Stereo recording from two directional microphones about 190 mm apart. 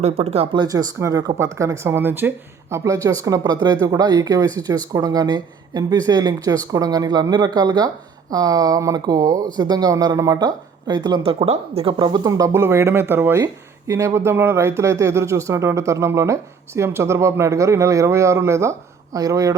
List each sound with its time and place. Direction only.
0.0 s speech: 35° right (ahead or behind); by 19.5 s 20° right (ahead or behind)